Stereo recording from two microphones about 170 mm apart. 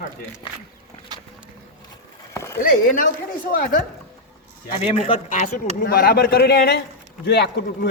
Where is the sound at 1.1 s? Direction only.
25° right (ahead or behind).